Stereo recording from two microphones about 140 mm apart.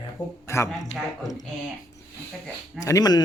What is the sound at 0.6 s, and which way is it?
Speech, centre (ahead or behind).